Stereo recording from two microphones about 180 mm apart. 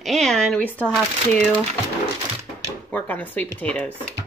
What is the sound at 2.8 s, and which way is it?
Speech, 10° left (ahead or behind).